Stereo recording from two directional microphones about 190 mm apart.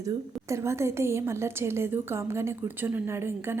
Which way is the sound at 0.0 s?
15° right (ahead or behind).